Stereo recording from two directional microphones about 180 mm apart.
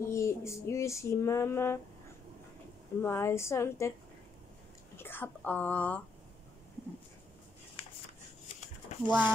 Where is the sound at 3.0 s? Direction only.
15° left (ahead or behind).